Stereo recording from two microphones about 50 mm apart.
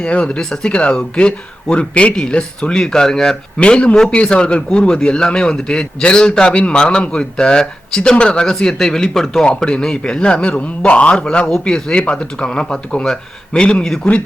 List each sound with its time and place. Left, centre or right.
0.0 s a man's voice: left; by 9.5 s centre
9.5 s a man's voice: centre